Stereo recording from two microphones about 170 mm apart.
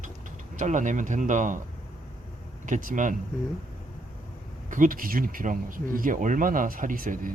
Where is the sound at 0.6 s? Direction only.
45° right (ahead or behind).